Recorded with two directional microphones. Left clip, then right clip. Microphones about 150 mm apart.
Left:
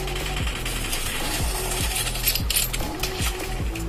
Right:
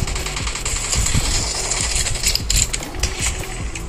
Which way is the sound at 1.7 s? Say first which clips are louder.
Right 5 dB; 45° right (ahead or behind).